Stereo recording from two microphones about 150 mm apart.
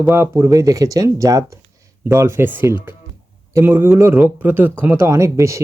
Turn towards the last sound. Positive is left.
turn(degrees=-20)  # may be behind; listen again after turning